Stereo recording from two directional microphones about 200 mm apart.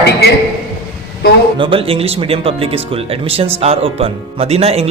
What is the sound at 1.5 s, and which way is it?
Speech, 25° right (ahead or behind).